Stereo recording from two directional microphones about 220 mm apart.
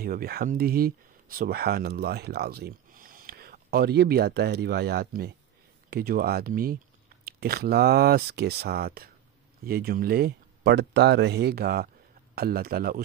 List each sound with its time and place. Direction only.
0.0 s speech: 45° right (ahead or behind)